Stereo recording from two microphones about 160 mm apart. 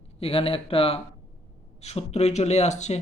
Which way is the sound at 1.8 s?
45° left (ahead or behind).